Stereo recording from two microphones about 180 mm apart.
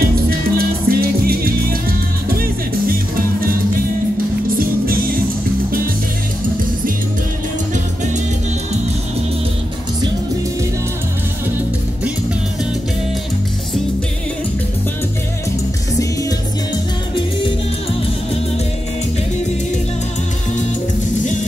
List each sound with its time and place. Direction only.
0.3 s music: 55° right (ahead or behind)
4.6 s music: 55° right (ahead or behind)
7.7 s music: 40° right (ahead or behind)
16.0 s music: 20° left (ahead or behind)